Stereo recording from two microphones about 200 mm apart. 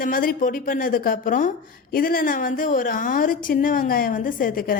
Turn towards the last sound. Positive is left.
turn(degrees=45)  # may be behind; listen again after turning